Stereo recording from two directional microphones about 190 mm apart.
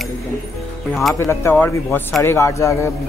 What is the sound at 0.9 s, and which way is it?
Music, centre (ahead or behind).